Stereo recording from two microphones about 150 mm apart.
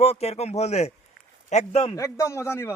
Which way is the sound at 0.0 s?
45° left (ahead or behind).